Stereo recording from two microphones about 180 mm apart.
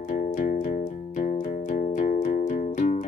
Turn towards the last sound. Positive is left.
turn(degrees=45)  # may be behind; listen again after turning